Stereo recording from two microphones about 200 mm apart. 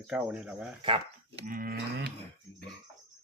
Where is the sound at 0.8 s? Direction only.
25° right (ahead or behind).